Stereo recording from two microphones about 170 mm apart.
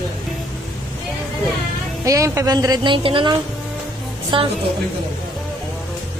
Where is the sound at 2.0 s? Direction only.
20° right (ahead or behind).